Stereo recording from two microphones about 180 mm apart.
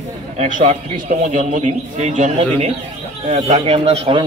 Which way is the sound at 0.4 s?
40° right (ahead or behind).